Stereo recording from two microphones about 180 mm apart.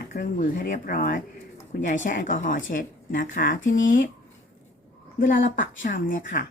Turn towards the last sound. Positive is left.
turn(degrees=50)  # may be behind; listen again after turning